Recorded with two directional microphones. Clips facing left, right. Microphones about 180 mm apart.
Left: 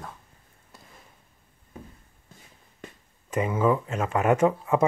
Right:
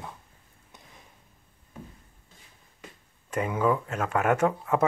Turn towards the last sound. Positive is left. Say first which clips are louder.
# left 3 dB
turn(degrees=10)  # may be behind; listen again after turning